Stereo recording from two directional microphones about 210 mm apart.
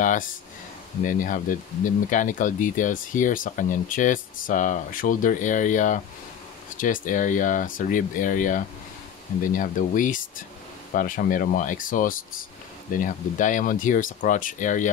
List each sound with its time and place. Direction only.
0.0 s speech: 40° left (ahead or behind)